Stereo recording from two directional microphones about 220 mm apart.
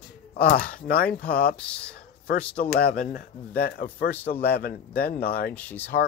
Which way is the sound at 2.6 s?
40° left (ahead or behind).